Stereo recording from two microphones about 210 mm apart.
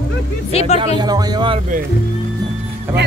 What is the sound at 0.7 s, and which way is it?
Speech, 20° right (ahead or behind).